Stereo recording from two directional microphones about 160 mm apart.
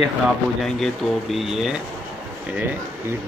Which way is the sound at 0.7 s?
Centre (ahead or behind).